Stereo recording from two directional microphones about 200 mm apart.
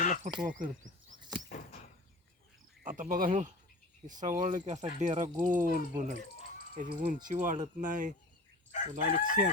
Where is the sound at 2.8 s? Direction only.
40° right (ahead or behind).